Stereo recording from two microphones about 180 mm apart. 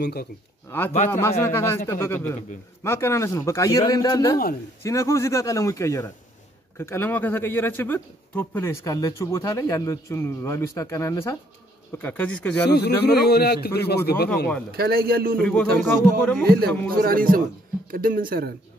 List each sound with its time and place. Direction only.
0.0 s speech: 60° left (ahead or behind)
0.7 s speech: 10° left (ahead or behind)
13.0 s speech: 65° left (ahead or behind)
14.7 s speech: 60° right (ahead or behind)
15.4 s speech: 5° left (ahead or behind)
16.4 s speech: 55° right (ahead or behind)